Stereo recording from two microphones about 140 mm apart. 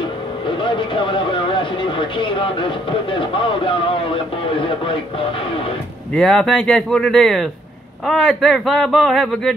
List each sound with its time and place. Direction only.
0.6 s speech: 35° left (ahead or behind)
6.1 s a man's voice: centre (ahead or behind)